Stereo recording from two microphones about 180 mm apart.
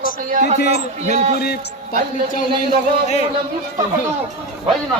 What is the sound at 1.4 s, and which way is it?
Speech, 60° left (ahead or behind).